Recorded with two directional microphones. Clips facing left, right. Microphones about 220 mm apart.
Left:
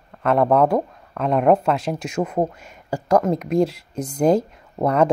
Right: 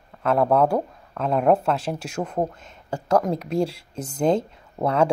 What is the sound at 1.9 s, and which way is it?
Speech, 5° left (ahead or behind).